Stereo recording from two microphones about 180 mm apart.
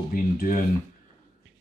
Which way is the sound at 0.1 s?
50° left (ahead or behind).